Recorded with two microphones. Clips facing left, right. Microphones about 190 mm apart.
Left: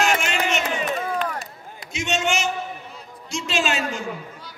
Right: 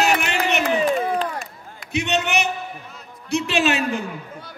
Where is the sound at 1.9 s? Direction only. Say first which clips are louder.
Right 2 dB; 60° right (ahead or behind).